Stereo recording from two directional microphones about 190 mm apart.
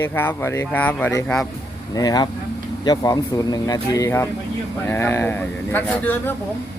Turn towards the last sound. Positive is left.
turn(degrees=10)  # may be behind; listen again after turning